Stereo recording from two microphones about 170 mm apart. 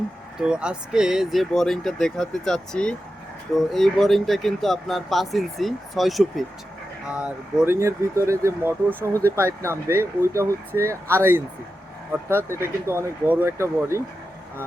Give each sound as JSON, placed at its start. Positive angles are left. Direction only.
{"t": 0.3, "sound": "speech", "side_deg": -5}
{"t": 12.5, "sound": "speech", "side_deg": -15}